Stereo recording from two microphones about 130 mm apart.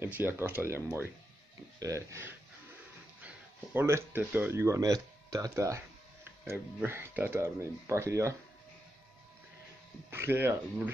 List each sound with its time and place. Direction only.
0.0 s speech: 15° right (ahead or behind)
10.1 s speech: 15° right (ahead or behind)